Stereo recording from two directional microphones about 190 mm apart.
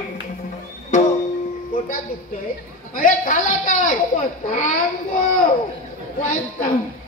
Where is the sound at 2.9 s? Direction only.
45° left (ahead or behind).